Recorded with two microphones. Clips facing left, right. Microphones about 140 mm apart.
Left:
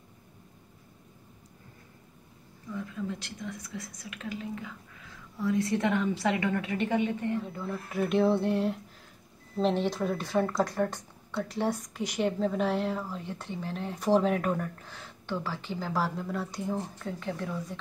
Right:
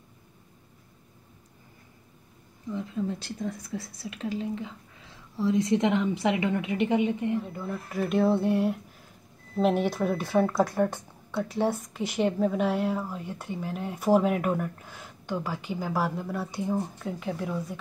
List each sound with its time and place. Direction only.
2.7 s a woman's voice: 25° right (ahead or behind)
7.4 s speech: 5° right (ahead or behind)